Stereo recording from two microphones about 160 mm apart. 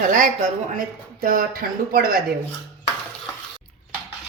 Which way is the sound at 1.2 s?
65° right (ahead or behind).